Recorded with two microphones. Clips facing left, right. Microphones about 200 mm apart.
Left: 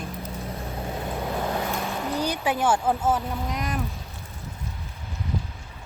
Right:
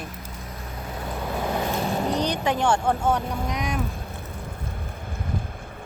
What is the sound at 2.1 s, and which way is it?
Speech, 10° left (ahead or behind).